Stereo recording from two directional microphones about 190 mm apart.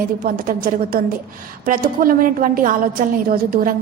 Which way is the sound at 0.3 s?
50° right (ahead or behind).